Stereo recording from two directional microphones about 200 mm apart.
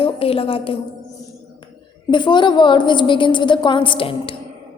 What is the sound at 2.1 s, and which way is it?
Speech, 25° left (ahead or behind).